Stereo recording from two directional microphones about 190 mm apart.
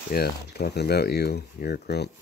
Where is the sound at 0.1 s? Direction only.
55° left (ahead or behind).